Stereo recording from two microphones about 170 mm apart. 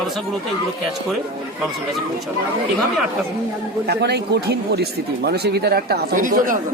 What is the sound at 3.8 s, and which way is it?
Speech, 75° right (ahead or behind).